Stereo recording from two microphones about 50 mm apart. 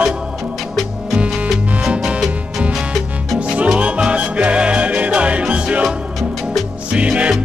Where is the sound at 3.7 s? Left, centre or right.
Right.